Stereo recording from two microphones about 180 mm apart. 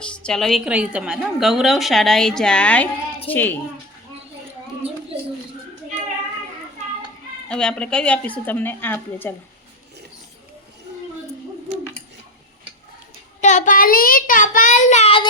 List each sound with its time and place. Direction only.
0.0 s a woman's voice: 5° left (ahead or behind)
7.4 s a woman's voice: 5° left (ahead or behind)
13.4 s a child's voice: 40° left (ahead or behind)